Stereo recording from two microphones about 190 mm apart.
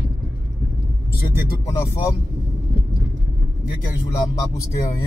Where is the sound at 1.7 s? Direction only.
15° left (ahead or behind).